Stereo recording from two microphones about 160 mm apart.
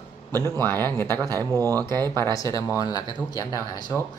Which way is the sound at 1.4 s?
25° right (ahead or behind).